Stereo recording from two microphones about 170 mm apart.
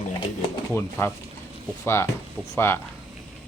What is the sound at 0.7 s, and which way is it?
Speech, 15° left (ahead or behind).